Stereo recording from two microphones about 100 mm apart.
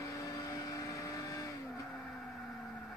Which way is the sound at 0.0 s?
30° left (ahead or behind).